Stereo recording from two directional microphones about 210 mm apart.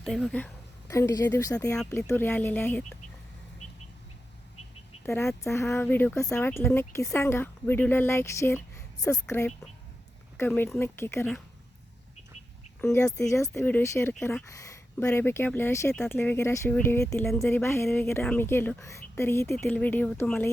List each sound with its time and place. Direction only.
0.0 s speech: centre (ahead or behind)
0.9 s speech: 15° left (ahead or behind)
1.7 s speech: 5° left (ahead or behind)
3.6 s bird: 35° left (ahead or behind)
5.0 s speech: 5° left (ahead or behind)
12.8 s speech: 15° left (ahead or behind)